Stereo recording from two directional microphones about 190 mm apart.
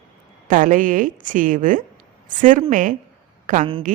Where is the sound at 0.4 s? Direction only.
45° right (ahead or behind).